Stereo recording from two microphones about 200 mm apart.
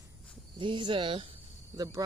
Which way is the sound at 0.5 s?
25° right (ahead or behind).